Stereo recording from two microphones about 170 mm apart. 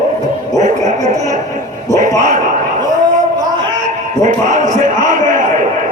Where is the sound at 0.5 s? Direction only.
45° right (ahead or behind).